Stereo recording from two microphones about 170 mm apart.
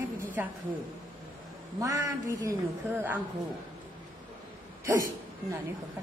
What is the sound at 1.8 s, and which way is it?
Speech, 20° right (ahead or behind).